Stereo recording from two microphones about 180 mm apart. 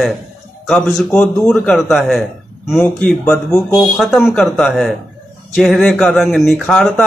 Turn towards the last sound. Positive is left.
turn(degrees=5)  # may be behind; listen again after turning